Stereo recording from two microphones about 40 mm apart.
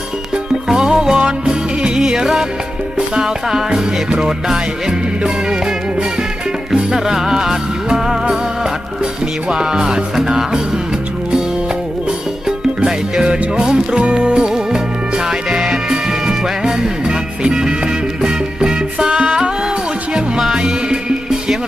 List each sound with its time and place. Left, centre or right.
0.7 s music: centre
9.5 s music: right
12.5 s music: right
20.6 s music: centre